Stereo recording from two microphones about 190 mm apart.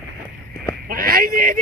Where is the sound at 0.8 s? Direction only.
50° right (ahead or behind).